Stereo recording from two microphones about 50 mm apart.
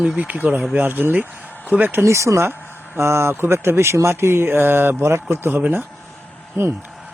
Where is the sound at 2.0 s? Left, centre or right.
Right.